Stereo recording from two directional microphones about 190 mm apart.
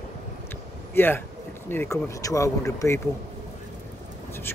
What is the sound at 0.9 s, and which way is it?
Speech, 10° left (ahead or behind).